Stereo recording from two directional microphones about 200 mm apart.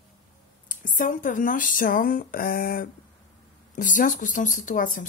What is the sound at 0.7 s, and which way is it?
Speech, 40° left (ahead or behind).